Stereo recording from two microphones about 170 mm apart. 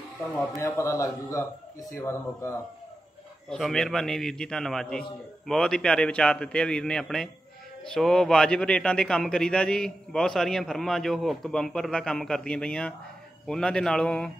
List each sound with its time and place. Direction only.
0.6 s a man's voice: 15° left (ahead or behind)
3.4 s a man's voice: 5° left (ahead or behind)